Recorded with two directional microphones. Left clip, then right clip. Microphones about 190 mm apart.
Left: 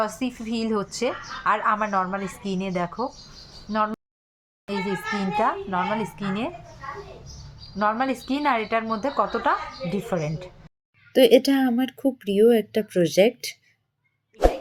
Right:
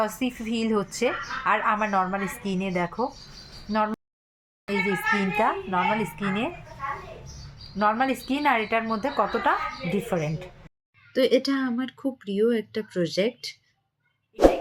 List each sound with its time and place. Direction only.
0.0 s a woman's voice: centre (ahead or behind)
7.8 s a woman's voice: 5° left (ahead or behind)
11.1 s a woman's voice: 20° left (ahead or behind)